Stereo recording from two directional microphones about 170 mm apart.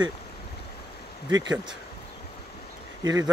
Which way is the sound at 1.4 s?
25° right (ahead or behind).